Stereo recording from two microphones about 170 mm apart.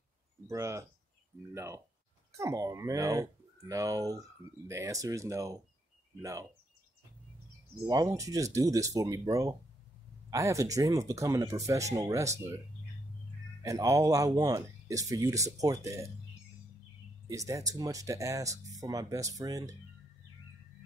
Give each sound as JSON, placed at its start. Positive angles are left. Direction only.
{"t": 0.5, "sound": "speech", "side_deg": -20}
{"t": 7.9, "sound": "speech", "side_deg": -20}
{"t": 13.6, "sound": "speech", "side_deg": -20}
{"t": 17.3, "sound": "speech", "side_deg": -20}